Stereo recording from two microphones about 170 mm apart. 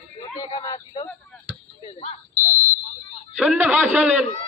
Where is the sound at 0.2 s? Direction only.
25° left (ahead or behind).